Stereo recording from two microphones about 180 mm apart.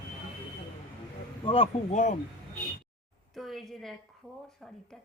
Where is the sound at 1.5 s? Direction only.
30° left (ahead or behind).